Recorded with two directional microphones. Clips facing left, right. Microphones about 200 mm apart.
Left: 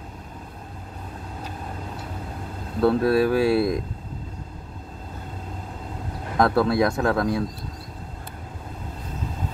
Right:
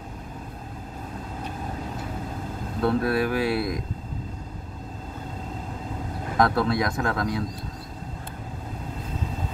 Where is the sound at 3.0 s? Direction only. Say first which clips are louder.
Left 5 dB; 25° left (ahead or behind).